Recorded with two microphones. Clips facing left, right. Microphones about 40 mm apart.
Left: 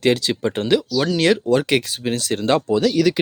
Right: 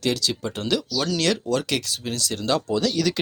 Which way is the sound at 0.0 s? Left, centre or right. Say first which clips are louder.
Left 6 dB; left.